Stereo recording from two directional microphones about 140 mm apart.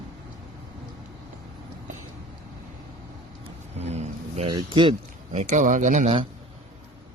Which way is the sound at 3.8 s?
50° right (ahead or behind).